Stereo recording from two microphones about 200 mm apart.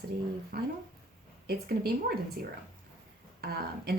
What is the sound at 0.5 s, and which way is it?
Speech, 50° right (ahead or behind).